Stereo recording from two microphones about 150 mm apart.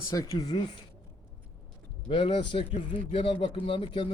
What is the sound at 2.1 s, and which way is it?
A man's voice, 35° left (ahead or behind).